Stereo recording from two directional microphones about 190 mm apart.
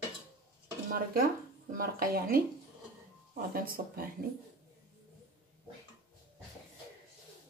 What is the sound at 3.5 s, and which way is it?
Speech, 50° right (ahead or behind).